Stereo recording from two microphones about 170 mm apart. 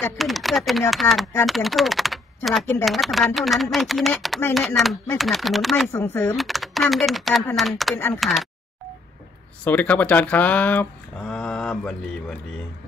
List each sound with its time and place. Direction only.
0.2 s speech: centre (ahead or behind)
5.9 s speech: 15° left (ahead or behind)
6.3 s speech: centre (ahead or behind)
7.9 s speech: 15° left (ahead or behind)
8.2 s speech: centre (ahead or behind)
9.7 s speech: 10° left (ahead or behind)